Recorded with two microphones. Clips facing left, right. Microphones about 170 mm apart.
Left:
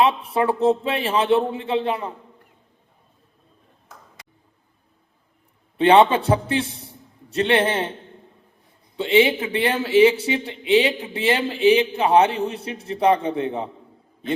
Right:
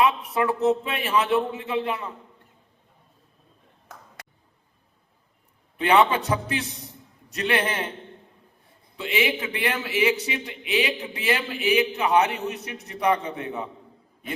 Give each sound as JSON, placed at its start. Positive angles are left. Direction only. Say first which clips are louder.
{"t": 0.0, "sound": "speech", "louder": "left 3 dB", "side_deg": 30}
{"t": 5.7, "sound": "speech", "louder": "left 5 dB", "side_deg": 30}
{"t": 9.0, "sound": "speech", "louder": "left 8 dB", "side_deg": 30}